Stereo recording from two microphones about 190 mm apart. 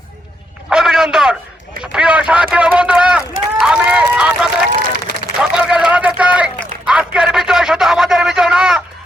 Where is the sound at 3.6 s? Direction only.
5° right (ahead or behind).